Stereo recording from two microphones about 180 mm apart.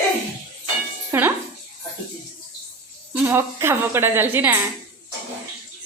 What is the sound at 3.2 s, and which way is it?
A woman's voice, 15° right (ahead or behind).